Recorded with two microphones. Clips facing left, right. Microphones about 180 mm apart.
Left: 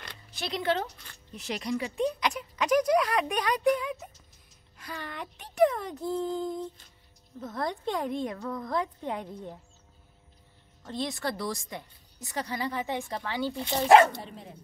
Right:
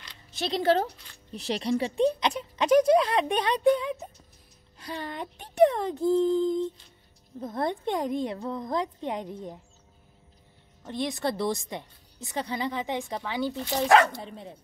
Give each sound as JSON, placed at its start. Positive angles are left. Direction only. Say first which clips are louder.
{"t": 0.3, "sound": "speech", "louder": "right 5 dB", "side_deg": -25}
{"t": 0.6, "sound": "speech", "louder": "right 5 dB", "side_deg": -40}
{"t": 7.4, "sound": "speech", "louder": "right 3 dB", "side_deg": -20}
{"t": 10.9, "sound": "speech", "louder": "right 3 dB", "side_deg": -15}
{"t": 13.6, "sound": "speech", "louder": "left 2 dB", "side_deg": 20}